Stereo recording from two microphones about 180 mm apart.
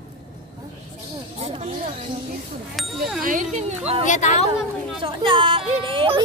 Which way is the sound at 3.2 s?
45° right (ahead or behind).